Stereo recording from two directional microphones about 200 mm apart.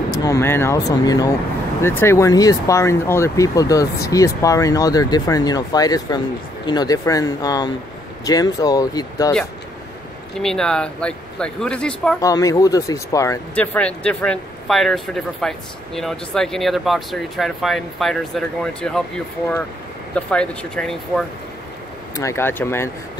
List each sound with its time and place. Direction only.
0.1 s speech: 15° left (ahead or behind)
10.3 s speech: 5° left (ahead or behind)
12.2 s speech: 15° left (ahead or behind)
22.1 s speech: 15° left (ahead or behind)